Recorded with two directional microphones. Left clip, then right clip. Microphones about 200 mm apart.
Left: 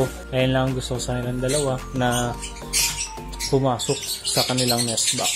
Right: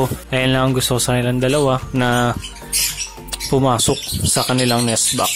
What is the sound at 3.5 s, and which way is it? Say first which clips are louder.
Speech: right 5 dB; 20° right (ahead or behind).